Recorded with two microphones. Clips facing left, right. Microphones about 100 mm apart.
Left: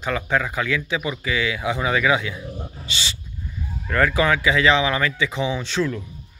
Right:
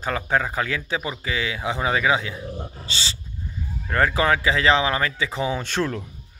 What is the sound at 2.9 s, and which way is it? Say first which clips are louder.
Speech: left 2 dB; 35° right (ahead or behind).